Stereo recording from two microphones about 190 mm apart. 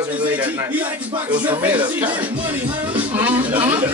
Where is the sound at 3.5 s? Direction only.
25° right (ahead or behind).